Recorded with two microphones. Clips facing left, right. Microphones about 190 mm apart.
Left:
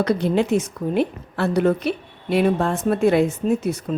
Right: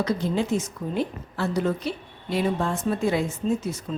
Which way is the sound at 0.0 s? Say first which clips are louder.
Left 5 dB; 65° left (ahead or behind).